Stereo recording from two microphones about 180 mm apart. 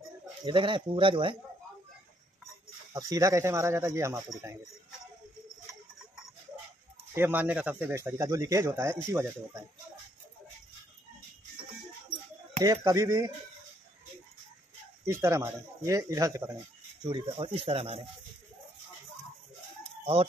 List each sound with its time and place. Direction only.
0.5 s speech: 25° right (ahead or behind)
2.9 s speech: 20° right (ahead or behind)
7.2 s speech: 10° right (ahead or behind)
12.5 s speech: 20° right (ahead or behind)
15.0 s speech: 15° right (ahead or behind); by 18.0 s 35° right (ahead or behind)